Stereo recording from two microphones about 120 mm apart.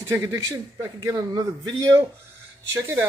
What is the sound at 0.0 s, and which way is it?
A man's voice, 25° right (ahead or behind).